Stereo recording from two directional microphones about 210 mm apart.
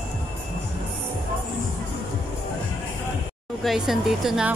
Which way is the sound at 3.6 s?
Centre (ahead or behind).